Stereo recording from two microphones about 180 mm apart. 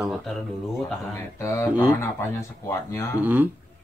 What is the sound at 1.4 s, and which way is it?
Speech, 15° left (ahead or behind).